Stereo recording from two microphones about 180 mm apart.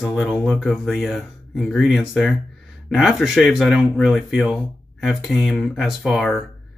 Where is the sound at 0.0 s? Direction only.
Centre (ahead or behind).